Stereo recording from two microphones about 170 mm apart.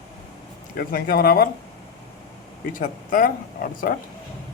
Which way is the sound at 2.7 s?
55° left (ahead or behind).